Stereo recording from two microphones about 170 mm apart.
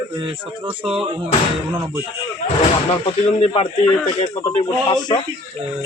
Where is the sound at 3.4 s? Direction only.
30° left (ahead or behind).